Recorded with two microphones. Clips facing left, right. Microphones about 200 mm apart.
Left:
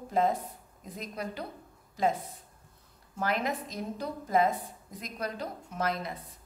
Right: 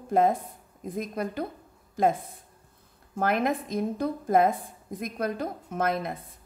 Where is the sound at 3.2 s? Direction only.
55° right (ahead or behind).